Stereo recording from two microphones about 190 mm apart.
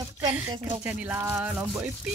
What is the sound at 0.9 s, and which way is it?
Rub, 10° right (ahead or behind).